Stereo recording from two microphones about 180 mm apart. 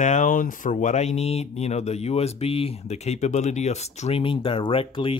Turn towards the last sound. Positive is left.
turn(degrees=30)  # may be behind; listen again after turning